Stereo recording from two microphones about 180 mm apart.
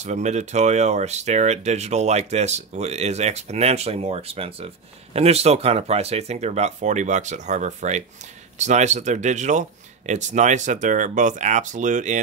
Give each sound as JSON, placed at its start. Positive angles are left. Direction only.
{"t": 0.0, "sound": "speech", "side_deg": -40}